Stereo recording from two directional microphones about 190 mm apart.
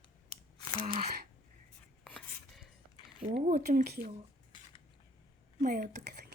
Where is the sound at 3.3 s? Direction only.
40° right (ahead or behind).